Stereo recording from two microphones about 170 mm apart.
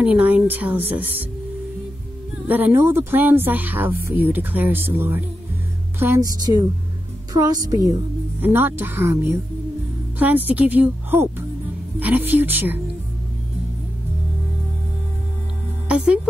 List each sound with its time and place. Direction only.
0.0 s speech: 10° right (ahead or behind)
2.4 s a woman's voice: 10° right (ahead or behind)
8.4 s speech: 10° right (ahead or behind)
15.9 s speech: 5° right (ahead or behind)